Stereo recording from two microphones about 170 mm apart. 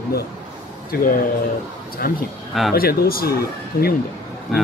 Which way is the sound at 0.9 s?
55° left (ahead or behind).